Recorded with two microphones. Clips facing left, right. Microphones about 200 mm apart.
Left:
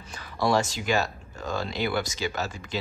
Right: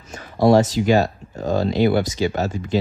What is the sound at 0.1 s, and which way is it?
Speech, 40° right (ahead or behind).